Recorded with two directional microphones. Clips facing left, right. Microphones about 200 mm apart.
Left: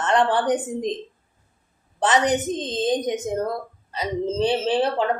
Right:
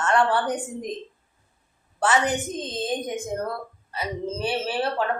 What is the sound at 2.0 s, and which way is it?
A woman's voice, 20° left (ahead or behind).